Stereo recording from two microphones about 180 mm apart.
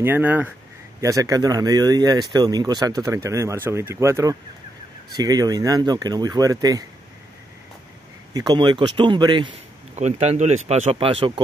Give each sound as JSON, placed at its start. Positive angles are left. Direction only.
{"t": 0.0, "sound": "a man's voice", "side_deg": -10}
{"t": 8.3, "sound": "a man's voice", "side_deg": -20}